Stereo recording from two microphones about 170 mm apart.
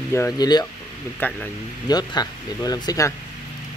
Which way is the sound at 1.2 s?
10° left (ahead or behind).